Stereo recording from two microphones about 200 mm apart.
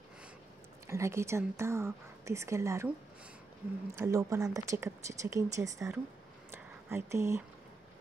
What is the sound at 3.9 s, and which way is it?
Speech, 15° right (ahead or behind).